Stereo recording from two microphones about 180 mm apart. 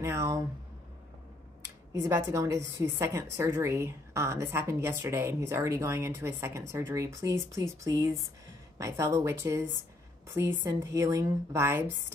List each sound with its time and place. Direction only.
0.0 s a woman's voice: 15° right (ahead or behind)
2.0 s a woman's voice: 15° right (ahead or behind)